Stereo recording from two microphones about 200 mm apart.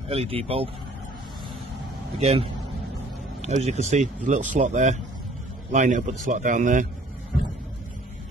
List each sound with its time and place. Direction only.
0.1 s speech: 30° right (ahead or behind)
2.1 s speech: 30° right (ahead or behind)
3.4 s speech: 35° right (ahead or behind)